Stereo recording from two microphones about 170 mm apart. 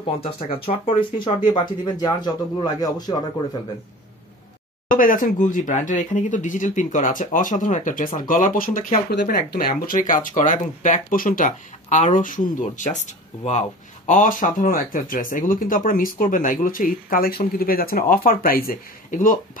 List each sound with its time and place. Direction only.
0.5 s speech: 35° left (ahead or behind)
4.8 s speech: 55° left (ahead or behind)
9.1 s speech: 70° left (ahead or behind); by 19.3 s 50° left (ahead or behind)